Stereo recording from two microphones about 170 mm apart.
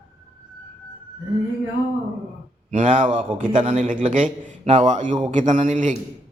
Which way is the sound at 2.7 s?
50° right (ahead or behind).